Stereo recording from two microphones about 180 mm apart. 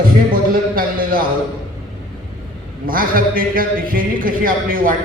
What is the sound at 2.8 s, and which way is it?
A man's voice, 50° right (ahead or behind).